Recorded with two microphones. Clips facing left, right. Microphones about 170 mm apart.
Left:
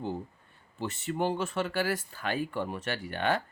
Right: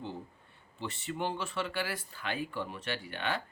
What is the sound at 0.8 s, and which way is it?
Speech, 45° left (ahead or behind).